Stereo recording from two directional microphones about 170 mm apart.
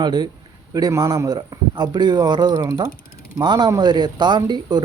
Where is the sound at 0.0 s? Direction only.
25° right (ahead or behind).